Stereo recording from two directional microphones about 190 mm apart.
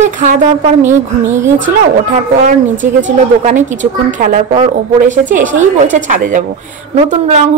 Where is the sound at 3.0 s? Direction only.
40° right (ahead or behind).